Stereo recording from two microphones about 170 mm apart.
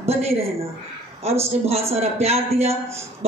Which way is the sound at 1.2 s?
35° right (ahead or behind).